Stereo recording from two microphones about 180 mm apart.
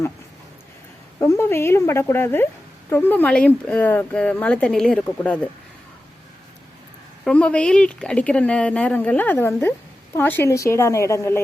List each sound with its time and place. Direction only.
1.2 s speech: 15° left (ahead or behind)
7.3 s speech: 5° left (ahead or behind)